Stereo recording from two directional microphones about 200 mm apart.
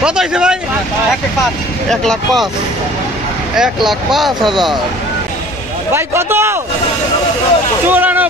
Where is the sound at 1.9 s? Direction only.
Centre (ahead or behind).